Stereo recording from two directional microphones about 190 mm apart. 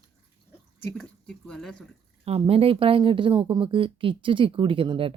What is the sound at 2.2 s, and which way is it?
Speech, 30° right (ahead or behind).